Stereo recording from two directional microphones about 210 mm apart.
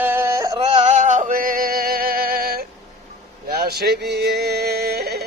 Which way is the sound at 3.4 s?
45° right (ahead or behind).